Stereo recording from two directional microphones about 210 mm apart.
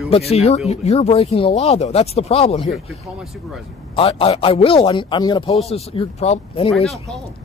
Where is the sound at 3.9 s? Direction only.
25° left (ahead or behind).